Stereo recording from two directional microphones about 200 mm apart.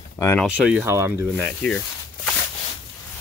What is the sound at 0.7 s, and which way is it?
Speech, 10° right (ahead or behind).